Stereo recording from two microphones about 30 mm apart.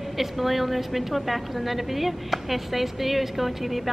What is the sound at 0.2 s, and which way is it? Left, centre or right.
A woman's voice, centre.